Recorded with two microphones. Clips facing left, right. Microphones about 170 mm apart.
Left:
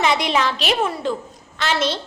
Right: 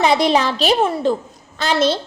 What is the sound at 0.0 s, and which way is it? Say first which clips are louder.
A woman's voice: right 4 dB; 35° right (ahead or behind).